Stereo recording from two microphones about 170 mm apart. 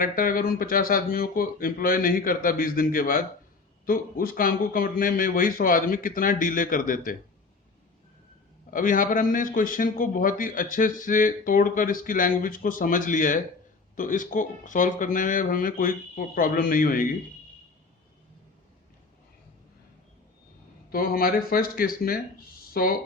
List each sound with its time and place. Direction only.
0.0 s a man's voice: 55° left (ahead or behind)
8.7 s a man's voice: 55° left (ahead or behind)
20.9 s a man's voice: 60° left (ahead or behind)